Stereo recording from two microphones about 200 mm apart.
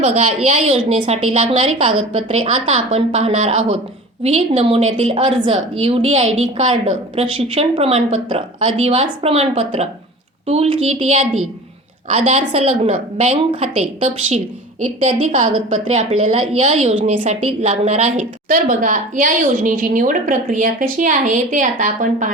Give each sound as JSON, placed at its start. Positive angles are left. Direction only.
{"t": 0.0, "sound": "a woman's voice", "side_deg": -35}